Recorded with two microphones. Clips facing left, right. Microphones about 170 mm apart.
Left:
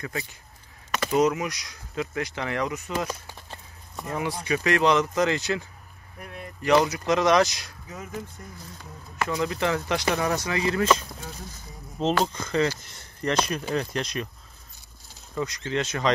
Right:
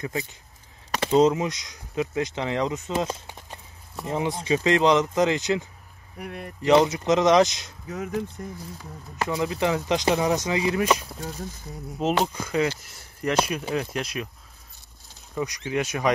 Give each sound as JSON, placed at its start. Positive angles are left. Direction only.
{"t": 0.0, "sound": "speech", "side_deg": -20}
{"t": 6.2, "sound": "speech", "side_deg": -65}
{"t": 6.6, "sound": "speech", "side_deg": -20}
{"t": 7.9, "sound": "speech", "side_deg": -70}
{"t": 9.3, "sound": "speech", "side_deg": -20}
{"t": 12.1, "sound": "speech", "side_deg": -15}
{"t": 15.3, "sound": "speech", "side_deg": -15}